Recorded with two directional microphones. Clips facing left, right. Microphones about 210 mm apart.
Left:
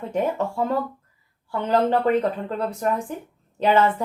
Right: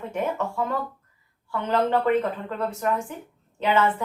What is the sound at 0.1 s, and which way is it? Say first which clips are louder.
A woman's voice: left 4 dB; 35° left (ahead or behind).